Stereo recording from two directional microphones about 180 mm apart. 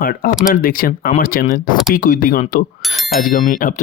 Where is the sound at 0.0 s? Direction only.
55° left (ahead or behind).